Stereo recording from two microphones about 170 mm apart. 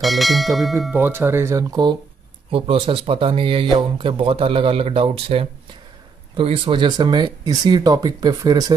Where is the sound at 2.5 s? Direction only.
30° right (ahead or behind).